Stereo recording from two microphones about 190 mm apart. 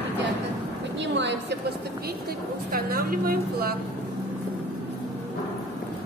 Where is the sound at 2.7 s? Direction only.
50° right (ahead or behind).